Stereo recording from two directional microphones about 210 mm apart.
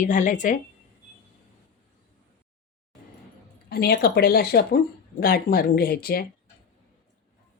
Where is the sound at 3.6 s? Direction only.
50° left (ahead or behind).